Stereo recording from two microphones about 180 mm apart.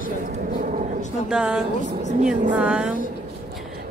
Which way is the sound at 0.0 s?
50° right (ahead or behind).